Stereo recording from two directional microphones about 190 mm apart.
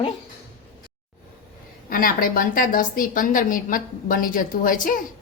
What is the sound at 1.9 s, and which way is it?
A woman's voice, 50° left (ahead or behind).